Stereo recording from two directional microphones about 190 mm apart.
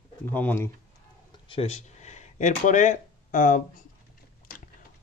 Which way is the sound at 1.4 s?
30° left (ahead or behind).